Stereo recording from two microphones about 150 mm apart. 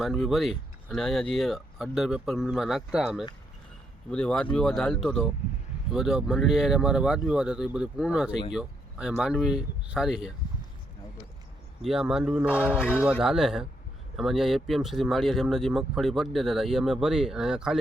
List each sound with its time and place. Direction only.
0.0 s speech: centre (ahead or behind)
11.8 s speech: 5° right (ahead or behind)
12.5 s a sound: 15° left (ahead or behind)
13.1 s speech: 5° right (ahead or behind)